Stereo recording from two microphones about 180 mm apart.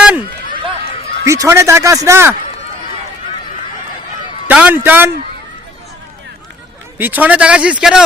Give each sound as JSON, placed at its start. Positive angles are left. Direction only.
{"t": 1.2, "sound": "speech", "side_deg": -15}
{"t": 4.4, "sound": "speech", "side_deg": -10}
{"t": 7.0, "sound": "speech", "side_deg": -10}